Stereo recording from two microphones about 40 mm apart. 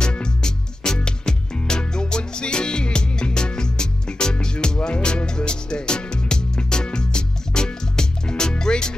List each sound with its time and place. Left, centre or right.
0.0 s music: left